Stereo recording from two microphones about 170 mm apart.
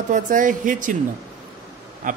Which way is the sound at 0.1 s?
50° right (ahead or behind).